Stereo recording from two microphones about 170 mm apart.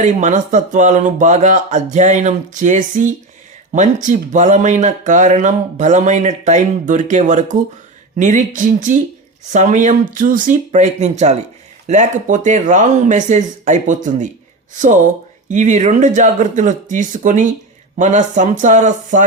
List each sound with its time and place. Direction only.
0.0 s speech: 45° right (ahead or behind)
15.4 s speech: 45° right (ahead or behind)